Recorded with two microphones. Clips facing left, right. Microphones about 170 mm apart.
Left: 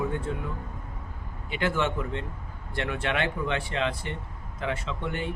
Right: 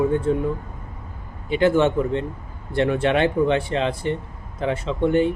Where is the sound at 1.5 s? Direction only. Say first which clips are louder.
Right 10 dB; 25° right (ahead or behind).